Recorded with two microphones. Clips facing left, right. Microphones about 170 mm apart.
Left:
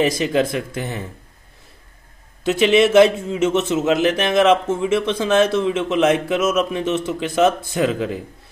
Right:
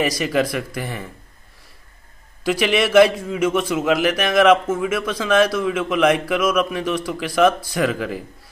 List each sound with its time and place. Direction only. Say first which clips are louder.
0.0 s a man's voice: left 2 dB; 25° left (ahead or behind)
2.4 s a man's voice: left 4 dB; 25° left (ahead or behind)